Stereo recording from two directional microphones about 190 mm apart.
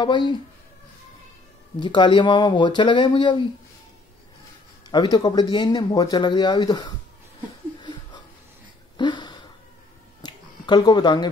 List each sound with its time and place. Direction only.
0.0 s speech: 25° left (ahead or behind)
1.8 s speech: 25° left (ahead or behind)
4.9 s speech: 25° left (ahead or behind)
8.9 s a sound: 25° left (ahead or behind)